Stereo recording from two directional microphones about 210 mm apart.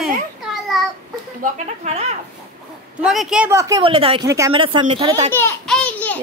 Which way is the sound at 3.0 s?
5° right (ahead or behind).